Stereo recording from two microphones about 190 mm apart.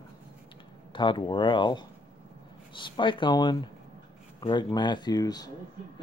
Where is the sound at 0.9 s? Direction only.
25° left (ahead or behind).